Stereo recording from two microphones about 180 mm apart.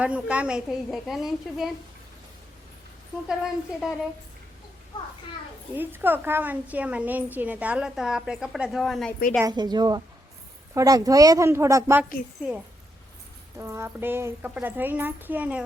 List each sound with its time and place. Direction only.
0.0 s a woman's voice: 5° right (ahead or behind)
3.2 s a woman's voice: 5° right (ahead or behind)
5.7 s a woman's voice: 10° right (ahead or behind)
9.4 s a woman's voice: 25° right (ahead or behind)
13.6 s a woman's voice: 15° right (ahead or behind)